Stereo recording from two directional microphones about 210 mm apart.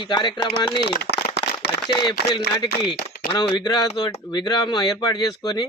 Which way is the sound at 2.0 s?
20° left (ahead or behind).